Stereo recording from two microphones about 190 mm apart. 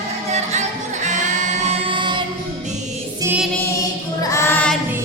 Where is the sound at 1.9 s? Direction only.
25° right (ahead or behind).